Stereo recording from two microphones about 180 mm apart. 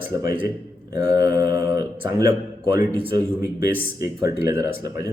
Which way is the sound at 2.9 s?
30° right (ahead or behind).